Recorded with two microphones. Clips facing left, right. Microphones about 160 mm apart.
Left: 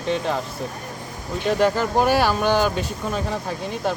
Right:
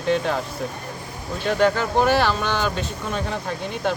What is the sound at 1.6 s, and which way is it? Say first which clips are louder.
Speech: right 1 dB; 5° left (ahead or behind).